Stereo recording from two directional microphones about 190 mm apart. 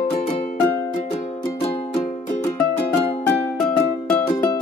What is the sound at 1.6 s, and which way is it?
Music, 30° left (ahead or behind).